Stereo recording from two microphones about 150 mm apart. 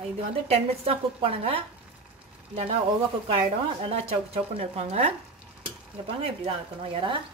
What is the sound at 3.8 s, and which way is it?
Speech, 40° right (ahead or behind).